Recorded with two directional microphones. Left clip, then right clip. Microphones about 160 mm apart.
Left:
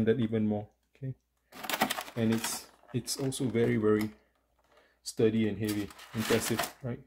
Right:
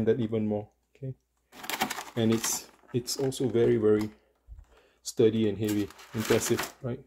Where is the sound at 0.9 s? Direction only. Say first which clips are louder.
Right 3 dB; centre (ahead or behind).